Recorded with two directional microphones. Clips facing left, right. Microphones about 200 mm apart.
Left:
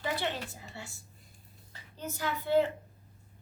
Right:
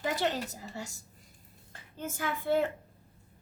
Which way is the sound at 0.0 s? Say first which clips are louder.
Right 3 dB; 45° right (ahead or behind).